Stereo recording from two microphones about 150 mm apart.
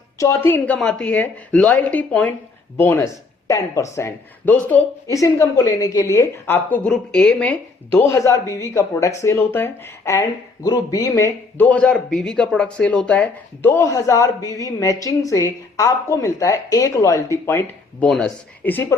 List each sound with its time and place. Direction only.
0.2 s a woman's voice: 20° left (ahead or behind)
7.9 s speech: 20° left (ahead or behind)
18.0 s a woman's voice: 5° left (ahead or behind)